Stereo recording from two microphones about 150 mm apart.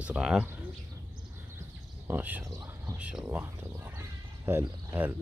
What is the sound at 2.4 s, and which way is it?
Speech, 25° right (ahead or behind).